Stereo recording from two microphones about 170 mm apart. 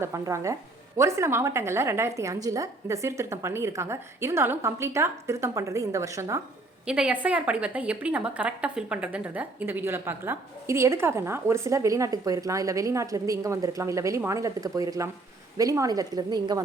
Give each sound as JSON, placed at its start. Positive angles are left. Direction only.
{"t": 0.0, "sound": "a woman's voice", "side_deg": -15}
{"t": 6.8, "sound": "a woman's voice", "side_deg": -5}